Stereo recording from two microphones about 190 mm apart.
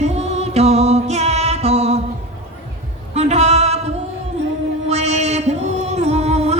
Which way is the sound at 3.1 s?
35° right (ahead or behind).